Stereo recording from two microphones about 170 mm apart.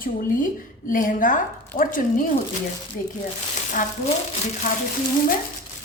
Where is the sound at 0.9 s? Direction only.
50° left (ahead or behind).